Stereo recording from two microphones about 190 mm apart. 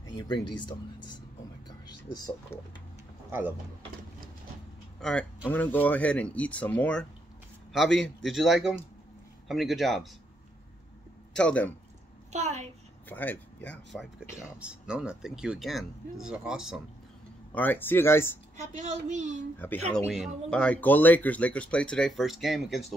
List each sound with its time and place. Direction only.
0.0 s speech: 25° left (ahead or behind)
1.7 s a sound: 20° left (ahead or behind)
3.3 s speech: 10° right (ahead or behind)
5.0 s speech: 5° left (ahead or behind)
11.3 s speech: 5° left (ahead or behind)
12.3 s a child's voice: 35° right (ahead or behind)
13.1 s speech: 10° left (ahead or behind)
14.6 s speech: 5° right (ahead or behind)
17.6 s speech: 10° left (ahead or behind)
18.8 s a child's voice: 40° right (ahead or behind)
19.6 s speech: 10° left (ahead or behind)
20.1 s speech: centre (ahead or behind)